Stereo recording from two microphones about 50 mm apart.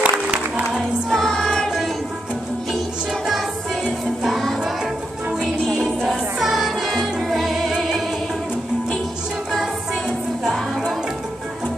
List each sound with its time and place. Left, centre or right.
0.0 s music: right
1.1 s music: centre
5.4 s music: centre